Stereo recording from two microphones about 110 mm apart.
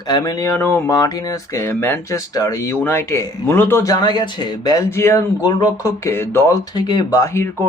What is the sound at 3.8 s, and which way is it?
Speech, 40° left (ahead or behind).